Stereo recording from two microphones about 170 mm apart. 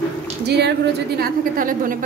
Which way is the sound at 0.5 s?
80° right.